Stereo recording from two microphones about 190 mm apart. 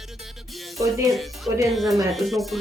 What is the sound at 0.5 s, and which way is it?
Music, centre (ahead or behind).